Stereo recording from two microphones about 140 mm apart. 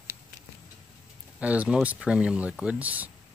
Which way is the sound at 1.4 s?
10° right (ahead or behind).